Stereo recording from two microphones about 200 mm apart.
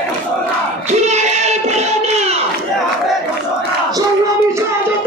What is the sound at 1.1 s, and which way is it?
Child singing, 35° right (ahead or behind).